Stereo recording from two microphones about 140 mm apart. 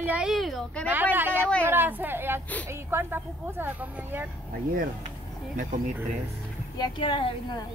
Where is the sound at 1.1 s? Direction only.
15° right (ahead or behind).